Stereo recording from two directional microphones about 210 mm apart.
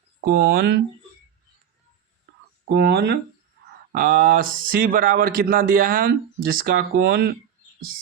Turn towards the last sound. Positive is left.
turn(degrees=-50)  # may be behind; listen again after turning